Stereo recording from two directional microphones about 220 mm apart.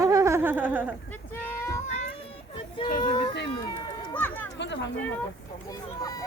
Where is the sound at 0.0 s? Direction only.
15° right (ahead or behind).